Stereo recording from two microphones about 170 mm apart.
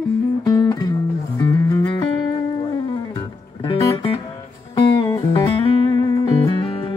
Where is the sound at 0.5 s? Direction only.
25° left (ahead or behind).